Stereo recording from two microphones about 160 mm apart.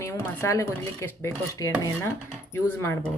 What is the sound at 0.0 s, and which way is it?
Speech, 15° left (ahead or behind).